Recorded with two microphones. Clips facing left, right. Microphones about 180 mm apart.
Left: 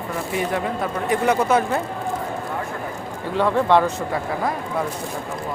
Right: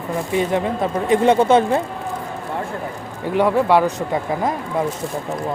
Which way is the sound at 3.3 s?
10° right (ahead or behind).